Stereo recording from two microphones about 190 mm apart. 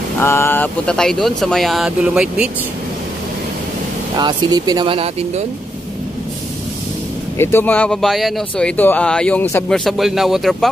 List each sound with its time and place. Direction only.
0.2 s speech: 15° left (ahead or behind); by 2.4 s 5° right (ahead or behind)
4.2 s speech: 25° right (ahead or behind)
7.3 s speech: 10° left (ahead or behind)
9.8 s speech: centre (ahead or behind)